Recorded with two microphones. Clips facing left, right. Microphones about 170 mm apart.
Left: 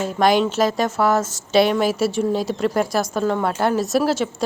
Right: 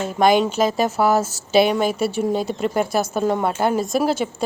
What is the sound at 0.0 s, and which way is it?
Speech, centre (ahead or behind).